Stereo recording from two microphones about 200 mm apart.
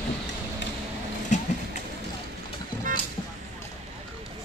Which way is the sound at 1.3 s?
35° left (ahead or behind).